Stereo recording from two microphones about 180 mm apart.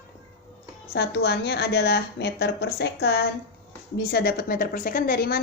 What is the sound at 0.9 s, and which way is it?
A woman's voice, 65° left (ahead or behind).